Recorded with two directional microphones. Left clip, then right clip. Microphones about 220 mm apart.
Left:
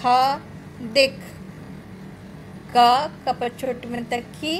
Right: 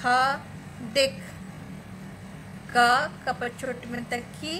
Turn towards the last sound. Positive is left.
turn(degrees=15)  # may be behind; listen again after turning